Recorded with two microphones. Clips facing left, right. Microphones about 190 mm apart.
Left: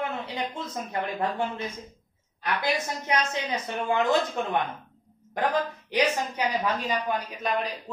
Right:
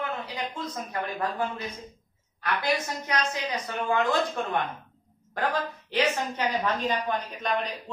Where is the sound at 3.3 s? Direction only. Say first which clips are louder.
Left 1 dB; 25° left (ahead or behind).